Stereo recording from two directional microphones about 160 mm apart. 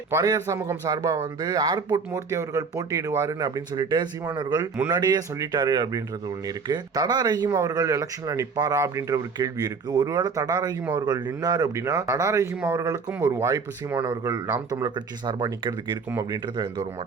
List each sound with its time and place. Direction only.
0.1 s speech: 20° right (ahead or behind)